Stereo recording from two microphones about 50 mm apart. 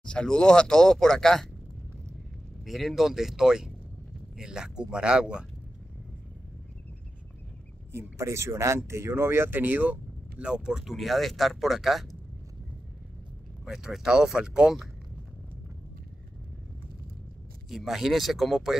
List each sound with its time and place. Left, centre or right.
0.0 s speech: centre
2.6 s speech: centre
8.2 s speech: right
9.6 s speech: right
10.4 s speech: centre
13.7 s speech: centre
17.6 s speech: centre